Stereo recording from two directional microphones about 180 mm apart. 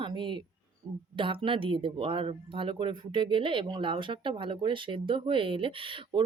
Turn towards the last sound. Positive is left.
turn(degrees=-30)  # may be behind; listen again after turning